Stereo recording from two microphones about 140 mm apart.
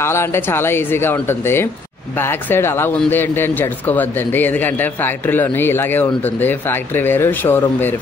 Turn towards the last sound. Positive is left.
turn(degrees=15)  # may be behind; listen again after turning